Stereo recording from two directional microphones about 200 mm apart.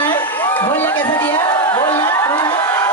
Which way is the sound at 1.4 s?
20° left (ahead or behind).